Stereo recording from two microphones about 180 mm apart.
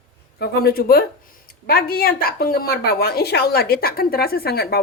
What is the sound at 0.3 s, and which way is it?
A woman's voice, 60° left (ahead or behind).